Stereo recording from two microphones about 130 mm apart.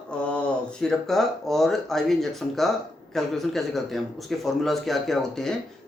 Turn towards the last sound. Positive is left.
turn(degrees=5)  # may be behind; listen again after turning